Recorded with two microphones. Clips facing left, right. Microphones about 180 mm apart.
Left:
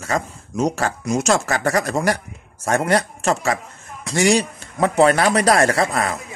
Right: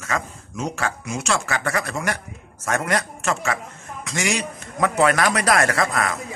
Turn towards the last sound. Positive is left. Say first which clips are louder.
# left 3 dB
turn(degrees=30)  # may be behind; listen again after turning